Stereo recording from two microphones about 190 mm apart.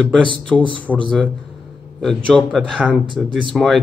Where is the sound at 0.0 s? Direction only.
5° left (ahead or behind).